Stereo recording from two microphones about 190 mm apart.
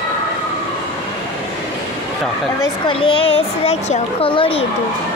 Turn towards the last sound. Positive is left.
turn(degrees=30)  # may be behind; listen again after turning